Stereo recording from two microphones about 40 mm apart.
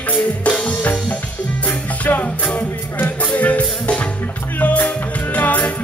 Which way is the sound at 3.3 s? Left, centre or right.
Left.